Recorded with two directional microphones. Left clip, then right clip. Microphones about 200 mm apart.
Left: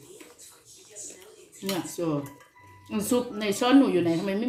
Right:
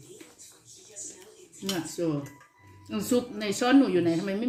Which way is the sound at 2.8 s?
15° right (ahead or behind).